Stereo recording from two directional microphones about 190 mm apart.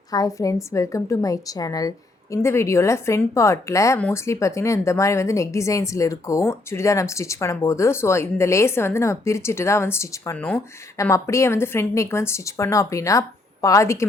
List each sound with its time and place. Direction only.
0.1 s a woman's voice: 15° left (ahead or behind)